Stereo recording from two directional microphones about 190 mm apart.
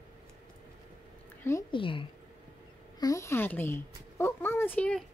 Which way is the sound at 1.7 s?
25° left (ahead or behind).